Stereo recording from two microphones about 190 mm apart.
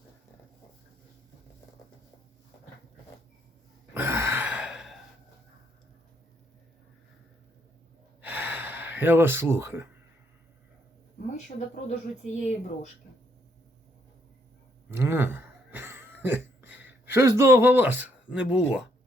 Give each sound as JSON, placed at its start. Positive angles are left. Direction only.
{"t": 3.9, "sound": "a sound", "side_deg": -10}
{"t": 8.2, "sound": "gasp", "side_deg": -10}
{"t": 11.4, "sound": "speech", "side_deg": 40}
{"t": 14.8, "sound": "cough", "side_deg": -15}